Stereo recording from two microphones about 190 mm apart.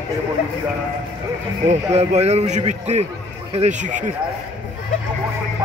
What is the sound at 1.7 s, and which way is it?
A man's voice, 35° right (ahead or behind).